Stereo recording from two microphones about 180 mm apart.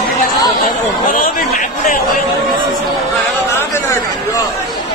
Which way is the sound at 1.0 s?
50° left (ahead or behind).